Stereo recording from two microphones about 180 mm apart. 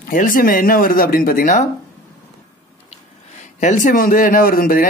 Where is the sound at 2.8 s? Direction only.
40° left (ahead or behind).